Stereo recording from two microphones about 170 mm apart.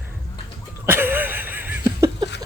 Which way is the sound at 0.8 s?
10° right (ahead or behind).